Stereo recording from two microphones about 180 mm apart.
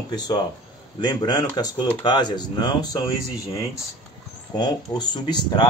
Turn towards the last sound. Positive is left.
turn(degrees=25)  # may be behind; listen again after turning